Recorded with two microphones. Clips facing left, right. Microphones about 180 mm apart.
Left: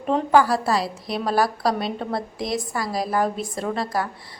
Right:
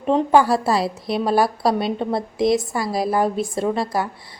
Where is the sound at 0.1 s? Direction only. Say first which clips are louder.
Right 2 dB; 25° right (ahead or behind).